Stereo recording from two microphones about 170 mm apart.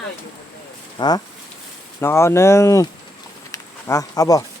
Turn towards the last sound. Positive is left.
turn(degrees=20)  # may be behind; listen again after turning